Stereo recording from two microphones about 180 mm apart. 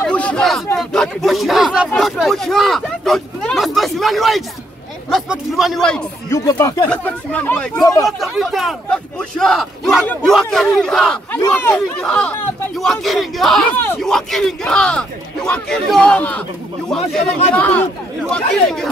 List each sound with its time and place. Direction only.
0.0 s a sound: 5° left (ahead or behind)
0.7 s speech: centre (ahead or behind)
6.3 s speech: 15° left (ahead or behind)
7.8 s speech: 20° left (ahead or behind)
8.2 s speech: centre (ahead or behind)